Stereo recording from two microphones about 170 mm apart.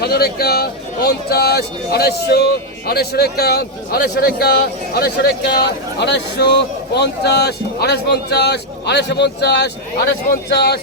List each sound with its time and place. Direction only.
0.0 s a man's voice: 65° left (ahead or behind)